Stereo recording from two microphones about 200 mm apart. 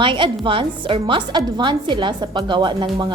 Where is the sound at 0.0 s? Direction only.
25° right (ahead or behind).